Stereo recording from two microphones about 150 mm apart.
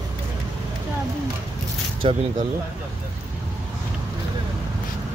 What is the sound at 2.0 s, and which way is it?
Speech, 35° right (ahead or behind).